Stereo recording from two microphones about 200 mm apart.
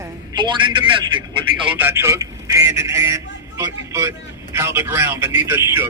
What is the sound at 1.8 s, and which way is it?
A man's voice, 10° right (ahead or behind).